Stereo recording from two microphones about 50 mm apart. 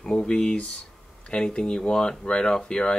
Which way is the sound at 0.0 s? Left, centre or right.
Centre.